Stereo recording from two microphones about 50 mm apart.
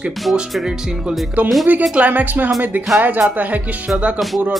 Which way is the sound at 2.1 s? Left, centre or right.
Right.